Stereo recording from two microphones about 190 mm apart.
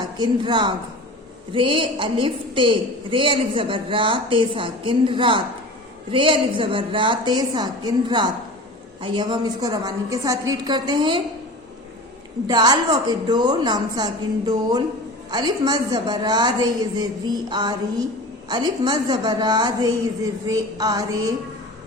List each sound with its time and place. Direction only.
0.2 s a woman's voice: 25° right (ahead or behind)
12.5 s a woman's voice: 20° right (ahead or behind)